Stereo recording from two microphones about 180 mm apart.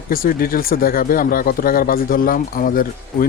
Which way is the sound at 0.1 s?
55° left (ahead or behind).